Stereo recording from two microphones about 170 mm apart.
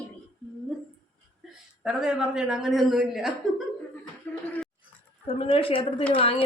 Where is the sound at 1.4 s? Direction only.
5° right (ahead or behind).